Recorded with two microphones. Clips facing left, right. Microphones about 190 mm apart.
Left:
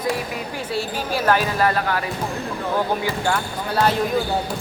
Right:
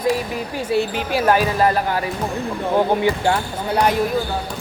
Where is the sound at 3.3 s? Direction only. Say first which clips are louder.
Right 3 dB; 15° right (ahead or behind).